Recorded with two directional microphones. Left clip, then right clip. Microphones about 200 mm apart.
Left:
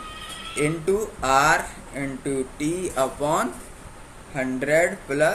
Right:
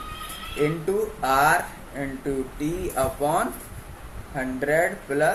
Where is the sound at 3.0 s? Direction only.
40° left (ahead or behind).